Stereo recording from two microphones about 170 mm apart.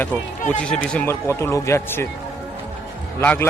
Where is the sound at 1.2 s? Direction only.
15° left (ahead or behind).